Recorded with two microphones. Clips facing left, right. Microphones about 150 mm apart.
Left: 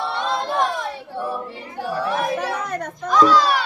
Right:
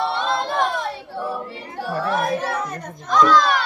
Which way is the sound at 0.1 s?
10° left (ahead or behind).